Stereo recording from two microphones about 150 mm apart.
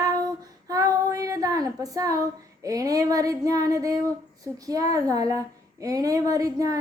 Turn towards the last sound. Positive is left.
turn(degrees=-20)  # may be behind; listen again after turning